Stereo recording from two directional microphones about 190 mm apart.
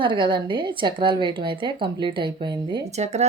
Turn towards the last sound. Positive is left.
turn(degrees=-35)  # may be behind; listen again after turning